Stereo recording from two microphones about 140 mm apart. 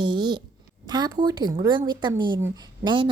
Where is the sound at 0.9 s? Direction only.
30° right (ahead or behind).